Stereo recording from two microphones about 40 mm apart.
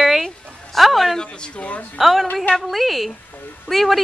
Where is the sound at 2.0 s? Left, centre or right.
Centre.